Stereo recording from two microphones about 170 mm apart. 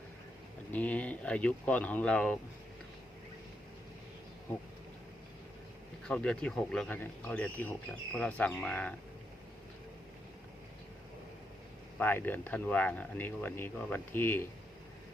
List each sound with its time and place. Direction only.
0.7 s a man's voice: 10° left (ahead or behind)
6.1 s a man's voice: 5° left (ahead or behind)
11.9 s a man's voice: 10° left (ahead or behind)